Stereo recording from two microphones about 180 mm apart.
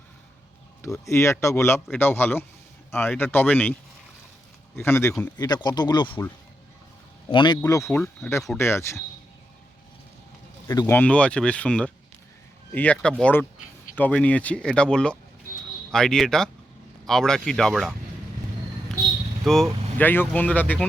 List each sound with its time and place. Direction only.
1.0 s speech: 15° left (ahead or behind)
4.8 s speech: 15° left (ahead or behind)
5.4 s speech: 25° left (ahead or behind)
6.1 s speech: 10° left (ahead or behind)
7.3 s speech: 25° left (ahead or behind)
10.7 s speech: 15° left (ahead or behind)
19.5 s speech: centre (ahead or behind)